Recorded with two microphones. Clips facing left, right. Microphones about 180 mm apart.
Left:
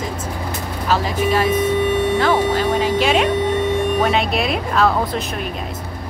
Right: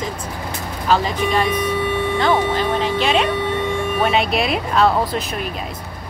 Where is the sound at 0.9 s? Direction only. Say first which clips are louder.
Even; 5° left (ahead or behind).